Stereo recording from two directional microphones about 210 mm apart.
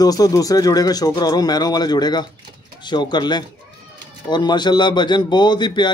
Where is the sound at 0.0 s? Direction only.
15° left (ahead or behind).